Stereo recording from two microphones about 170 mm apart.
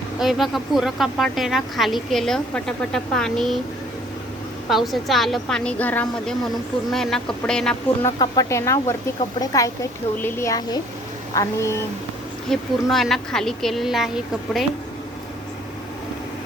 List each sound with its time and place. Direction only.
0.2 s speech: centre (ahead or behind)
4.7 s speech: centre (ahead or behind)
8.0 s a woman's voice: 20° left (ahead or behind)
12.5 s speech: centre (ahead or behind)